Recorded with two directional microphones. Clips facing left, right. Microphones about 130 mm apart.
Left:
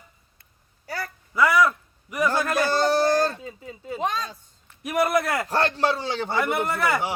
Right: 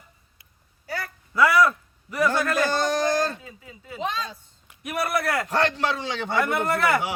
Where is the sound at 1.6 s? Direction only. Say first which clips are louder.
Right 1 dB; 15° left (ahead or behind).